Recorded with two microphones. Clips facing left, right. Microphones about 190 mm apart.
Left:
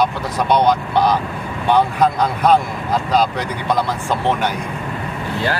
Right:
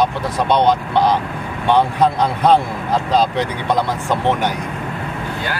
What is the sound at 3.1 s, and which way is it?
Speech, 25° right (ahead or behind).